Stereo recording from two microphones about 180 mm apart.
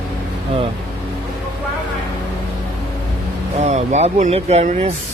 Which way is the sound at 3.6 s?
40° right (ahead or behind).